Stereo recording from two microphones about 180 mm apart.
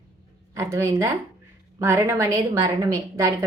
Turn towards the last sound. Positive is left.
turn(degrees=-15)  # may be behind; listen again after turning